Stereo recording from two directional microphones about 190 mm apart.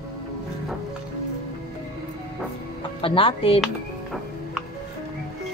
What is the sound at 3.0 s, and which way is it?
Speech, 30° left (ahead or behind).